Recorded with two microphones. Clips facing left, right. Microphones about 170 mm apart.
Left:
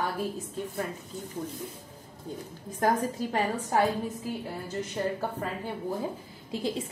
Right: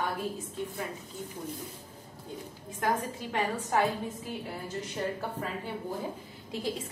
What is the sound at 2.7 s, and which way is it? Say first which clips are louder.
A woman's voice: left 4 dB; 40° left (ahead or behind).